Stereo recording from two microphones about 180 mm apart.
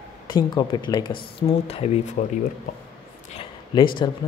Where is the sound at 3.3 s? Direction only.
30° left (ahead or behind).